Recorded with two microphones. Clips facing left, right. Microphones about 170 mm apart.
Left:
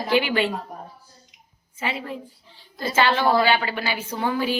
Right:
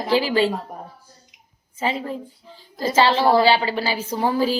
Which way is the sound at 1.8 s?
40° right (ahead or behind).